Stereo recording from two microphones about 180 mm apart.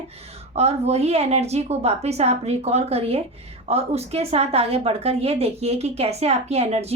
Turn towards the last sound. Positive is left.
turn(degrees=-35)  # may be behind; listen again after turning